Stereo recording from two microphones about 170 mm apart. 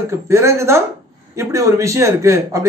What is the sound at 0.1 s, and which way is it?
A man's voice, 15° right (ahead or behind).